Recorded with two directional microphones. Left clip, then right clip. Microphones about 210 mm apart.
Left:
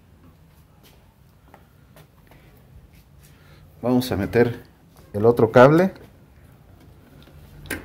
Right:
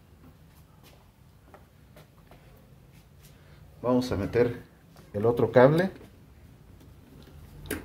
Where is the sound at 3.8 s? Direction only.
50° left (ahead or behind).